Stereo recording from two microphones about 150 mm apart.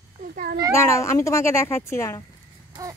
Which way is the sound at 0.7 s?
20° left (ahead or behind).